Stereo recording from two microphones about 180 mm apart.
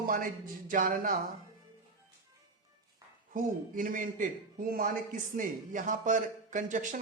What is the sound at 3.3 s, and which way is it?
A man's voice, 50° right (ahead or behind).